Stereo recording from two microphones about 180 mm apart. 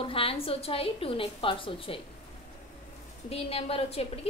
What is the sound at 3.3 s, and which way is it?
Speech, 30° left (ahead or behind).